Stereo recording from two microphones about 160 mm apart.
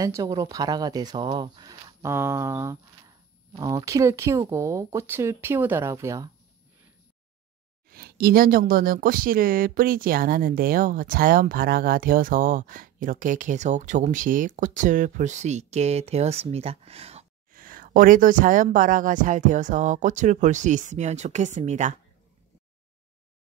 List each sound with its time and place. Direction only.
0.0 s speech: 20° right (ahead or behind)
7.9 s speech: 70° right (ahead or behind); by 17.3 s 40° right (ahead or behind)
17.5 s speech: 60° right (ahead or behind)